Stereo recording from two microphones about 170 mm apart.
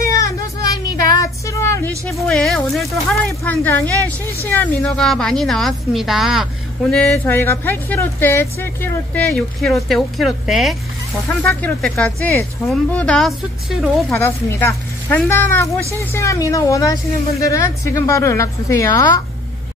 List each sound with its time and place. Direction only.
0.2 s a sound: 20° left (ahead or behind)
2.0 s a woman's voice: 5° left (ahead or behind)
3.3 s a woman's voice: 10° left (ahead or behind)
14.1 s a woman's voice: 15° left (ahead or behind)